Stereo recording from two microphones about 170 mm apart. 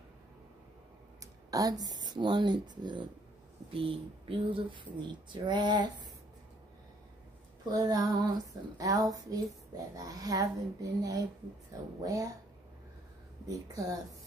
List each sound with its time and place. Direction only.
1.2 s speech: 20° right (ahead or behind)
7.7 s speech: 20° right (ahead or behind)
13.5 s speech: 20° right (ahead or behind)